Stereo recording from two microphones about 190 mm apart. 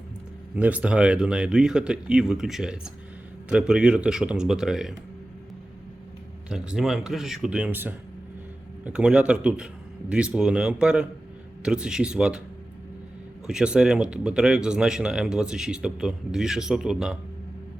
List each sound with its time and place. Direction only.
0.5 s speech: 5° right (ahead or behind)
6.5 s speech: 5° right (ahead or behind)
13.5 s speech: 5° right (ahead or behind)